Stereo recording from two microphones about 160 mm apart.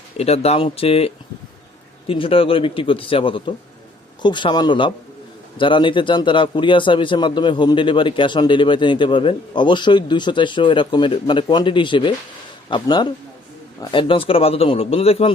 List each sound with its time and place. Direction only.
0.2 s a man's voice: 40° left (ahead or behind)